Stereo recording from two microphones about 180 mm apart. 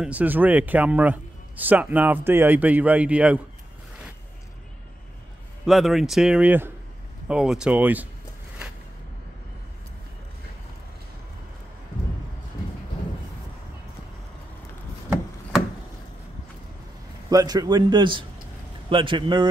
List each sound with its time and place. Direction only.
0.0 s a man's voice: 10° right (ahead or behind)
5.7 s speech: centre (ahead or behind)
17.3 s a man's voice: 20° right (ahead or behind)